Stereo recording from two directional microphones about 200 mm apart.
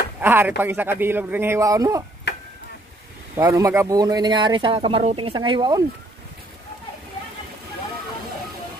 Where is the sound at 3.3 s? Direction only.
15° right (ahead or behind).